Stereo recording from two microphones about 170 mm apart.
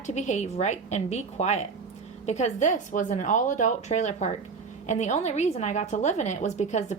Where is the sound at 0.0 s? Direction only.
45° left (ahead or behind).